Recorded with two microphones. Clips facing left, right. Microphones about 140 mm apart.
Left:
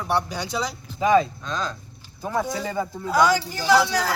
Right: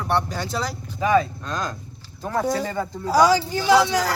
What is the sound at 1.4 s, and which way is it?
Speech, 10° right (ahead or behind).